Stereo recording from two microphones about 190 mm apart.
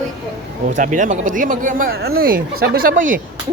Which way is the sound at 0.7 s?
40° right (ahead or behind).